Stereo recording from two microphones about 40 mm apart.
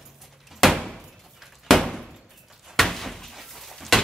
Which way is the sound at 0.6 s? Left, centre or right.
Centre.